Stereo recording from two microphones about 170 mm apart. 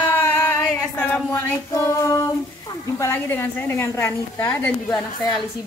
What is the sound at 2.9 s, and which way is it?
A woman's voice, 15° left (ahead or behind).